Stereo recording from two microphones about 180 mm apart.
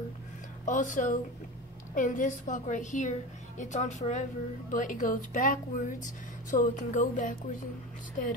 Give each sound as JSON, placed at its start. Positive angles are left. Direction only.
{"t": 0.7, "sound": "speech", "side_deg": 45}